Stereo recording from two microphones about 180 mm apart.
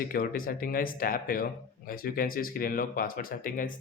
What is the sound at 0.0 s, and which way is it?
Speech, 55° left (ahead or behind).